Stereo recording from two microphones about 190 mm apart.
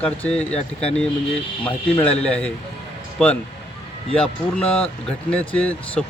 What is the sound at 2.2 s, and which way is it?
Speech, 5° left (ahead or behind).